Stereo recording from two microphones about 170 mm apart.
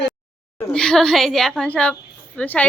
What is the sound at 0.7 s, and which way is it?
A woman's voice, 5° left (ahead or behind).